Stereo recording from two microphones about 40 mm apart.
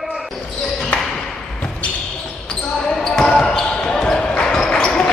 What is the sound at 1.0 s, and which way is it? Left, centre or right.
Ping, centre.